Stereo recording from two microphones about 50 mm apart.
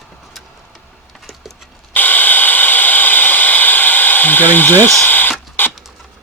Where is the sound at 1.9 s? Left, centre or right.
Left.